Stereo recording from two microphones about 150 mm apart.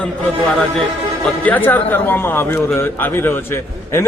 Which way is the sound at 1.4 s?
10° left (ahead or behind).